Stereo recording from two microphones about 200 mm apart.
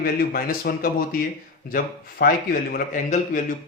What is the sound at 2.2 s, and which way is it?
Speech, 50° left (ahead or behind).